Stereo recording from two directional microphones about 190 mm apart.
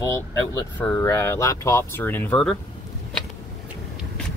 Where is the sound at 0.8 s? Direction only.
10° left (ahead or behind).